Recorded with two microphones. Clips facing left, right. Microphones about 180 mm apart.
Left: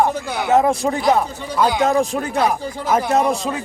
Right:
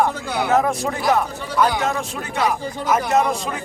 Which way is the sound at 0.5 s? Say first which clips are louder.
Left 4 dB; 25° left (ahead or behind).